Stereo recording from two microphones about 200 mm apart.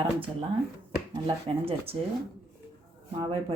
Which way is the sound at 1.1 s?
25° right (ahead or behind).